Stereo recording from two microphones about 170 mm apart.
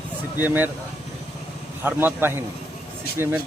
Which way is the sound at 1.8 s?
10° right (ahead or behind).